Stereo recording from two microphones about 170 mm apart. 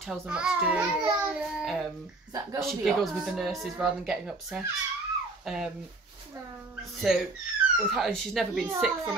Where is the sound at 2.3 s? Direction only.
20° right (ahead or behind).